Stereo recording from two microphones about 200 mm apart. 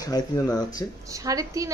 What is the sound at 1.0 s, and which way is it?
Speech, 15° right (ahead or behind).